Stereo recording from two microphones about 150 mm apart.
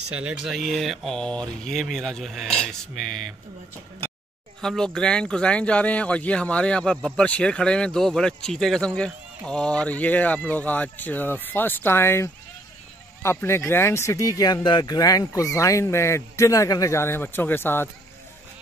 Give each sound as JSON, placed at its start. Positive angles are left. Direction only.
{"t": 0.1, "sound": "speech", "side_deg": -10}
{"t": 4.6, "sound": "speech", "side_deg": 5}